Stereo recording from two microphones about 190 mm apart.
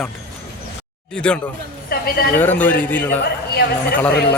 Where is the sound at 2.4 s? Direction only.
10° left (ahead or behind).